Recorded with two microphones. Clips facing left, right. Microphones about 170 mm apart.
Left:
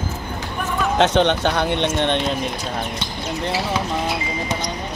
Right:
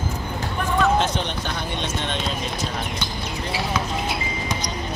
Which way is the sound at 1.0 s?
75° left (ahead or behind).